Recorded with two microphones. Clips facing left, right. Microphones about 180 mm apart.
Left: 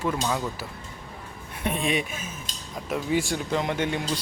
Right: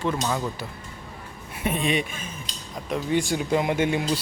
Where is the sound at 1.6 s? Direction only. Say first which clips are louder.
Right 2 dB; centre (ahead or behind).